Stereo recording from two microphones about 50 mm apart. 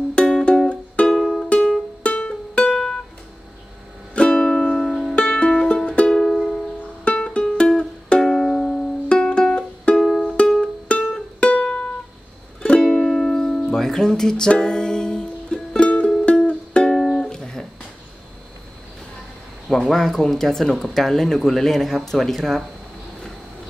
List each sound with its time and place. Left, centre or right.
0.1 s music: centre
1.2 s music: centre
1.7 s music: left
4.1 s music: left
4.8 s music: centre
5.9 s music: centre
8.6 s music: left
9.2 s music: centre
19.7 s speech: centre